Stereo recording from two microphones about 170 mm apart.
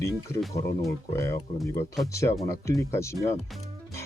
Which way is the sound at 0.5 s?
15° left (ahead or behind).